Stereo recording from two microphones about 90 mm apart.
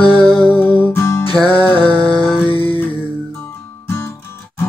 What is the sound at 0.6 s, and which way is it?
Music, 20° left (ahead or behind).